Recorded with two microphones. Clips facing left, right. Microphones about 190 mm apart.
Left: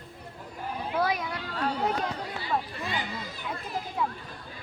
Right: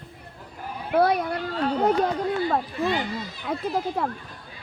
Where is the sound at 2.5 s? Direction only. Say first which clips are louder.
Right 7 dB; 50° right (ahead or behind).